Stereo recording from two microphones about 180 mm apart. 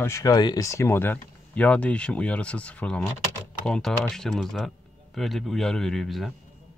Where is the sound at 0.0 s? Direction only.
15° left (ahead or behind); by 6.3 s centre (ahead or behind).